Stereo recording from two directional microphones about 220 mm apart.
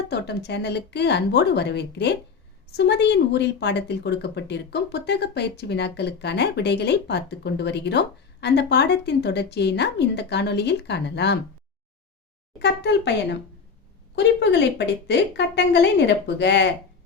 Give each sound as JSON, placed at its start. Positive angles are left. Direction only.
{"t": 0.1, "sound": "speech", "side_deg": 50}
{"t": 12.5, "sound": "speech", "side_deg": 50}
{"t": 14.2, "sound": "speech", "side_deg": 50}